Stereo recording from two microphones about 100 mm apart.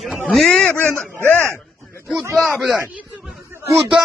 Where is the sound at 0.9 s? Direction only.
5° left (ahead or behind).